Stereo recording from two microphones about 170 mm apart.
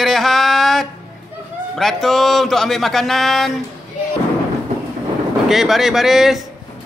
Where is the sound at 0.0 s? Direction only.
Centre (ahead or behind).